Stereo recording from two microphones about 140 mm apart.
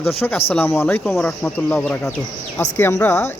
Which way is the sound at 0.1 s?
15° left (ahead or behind).